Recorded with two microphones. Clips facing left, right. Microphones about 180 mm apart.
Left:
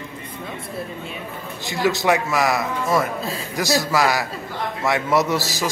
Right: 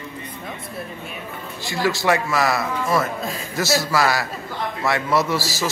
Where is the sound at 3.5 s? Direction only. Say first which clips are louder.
Even; 15° left (ahead or behind).